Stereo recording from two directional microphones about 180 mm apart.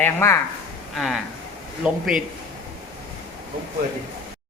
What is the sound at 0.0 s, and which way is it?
Speech, 15° left (ahead or behind).